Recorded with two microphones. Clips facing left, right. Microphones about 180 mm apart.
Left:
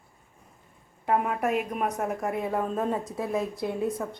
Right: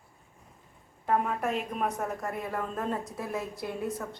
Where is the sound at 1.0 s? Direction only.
5° left (ahead or behind).